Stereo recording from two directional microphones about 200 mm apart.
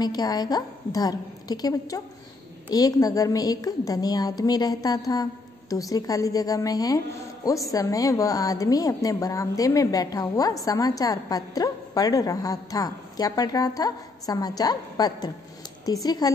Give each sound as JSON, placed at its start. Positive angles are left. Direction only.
{"t": 0.0, "sound": "a woman's voice", "side_deg": 20}